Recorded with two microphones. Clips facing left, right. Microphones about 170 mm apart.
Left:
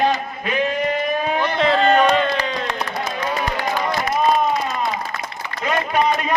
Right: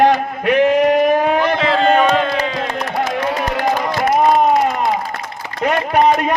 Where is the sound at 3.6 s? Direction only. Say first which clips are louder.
Right 5 dB; 50° right (ahead or behind).